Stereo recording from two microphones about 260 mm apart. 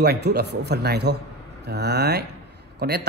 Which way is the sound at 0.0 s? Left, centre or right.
Right.